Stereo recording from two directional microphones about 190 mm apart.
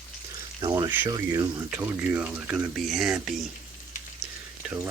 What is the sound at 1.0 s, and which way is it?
Speech, 20° right (ahead or behind).